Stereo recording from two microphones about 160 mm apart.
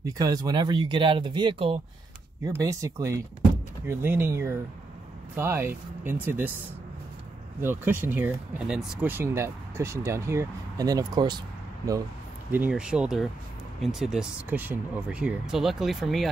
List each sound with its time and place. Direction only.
0.0 s speech: 20° right (ahead or behind)
2.4 s speech: 20° right (ahead or behind)
7.6 s speech: 15° right (ahead or behind)
12.4 s speech: 10° right (ahead or behind)